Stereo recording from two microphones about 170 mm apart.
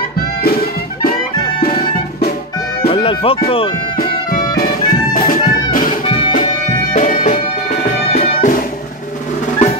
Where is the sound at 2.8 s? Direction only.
30° left (ahead or behind).